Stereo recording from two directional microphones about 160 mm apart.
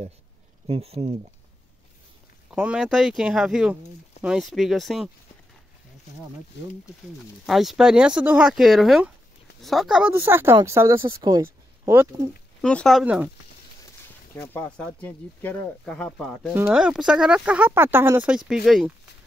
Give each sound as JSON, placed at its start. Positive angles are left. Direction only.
{"t": 0.7, "sound": "speech", "side_deg": -40}
{"t": 2.5, "sound": "speech", "side_deg": -5}
{"t": 7.4, "sound": "speech", "side_deg": 0}
{"t": 12.6, "sound": "speech", "side_deg": 5}
{"t": 13.0, "sound": "speech", "side_deg": -10}
{"t": 14.3, "sound": "speech", "side_deg": 10}
{"t": 16.5, "sound": "speech", "side_deg": -5}